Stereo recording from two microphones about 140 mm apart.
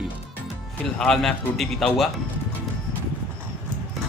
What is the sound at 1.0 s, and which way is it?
A man's voice, 5° left (ahead or behind).